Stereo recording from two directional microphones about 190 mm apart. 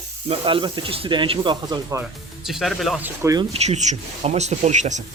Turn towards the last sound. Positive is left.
turn(degrees=-40)  # may be behind; listen again after turning